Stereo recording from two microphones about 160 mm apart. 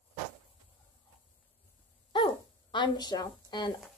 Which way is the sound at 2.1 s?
30° left (ahead or behind).